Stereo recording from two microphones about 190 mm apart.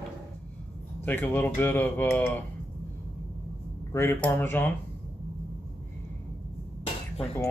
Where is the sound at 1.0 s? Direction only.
10° left (ahead or behind).